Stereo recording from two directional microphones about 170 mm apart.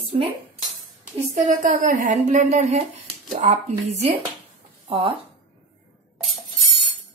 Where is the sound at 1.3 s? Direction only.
50° right (ahead or behind).